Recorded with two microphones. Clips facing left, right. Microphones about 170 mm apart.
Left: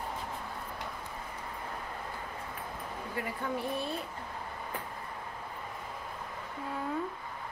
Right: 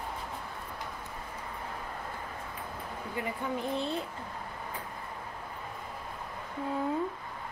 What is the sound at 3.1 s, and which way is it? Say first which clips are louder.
Speech: right 1 dB; 20° right (ahead or behind).